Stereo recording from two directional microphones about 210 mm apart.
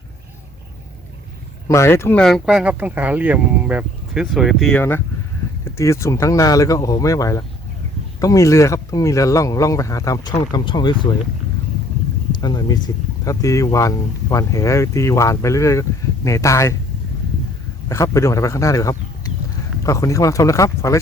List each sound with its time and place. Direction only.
1.6 s speech: 15° left (ahead or behind)
12.4 s speech: 20° left (ahead or behind)
17.8 s speech: 15° left (ahead or behind)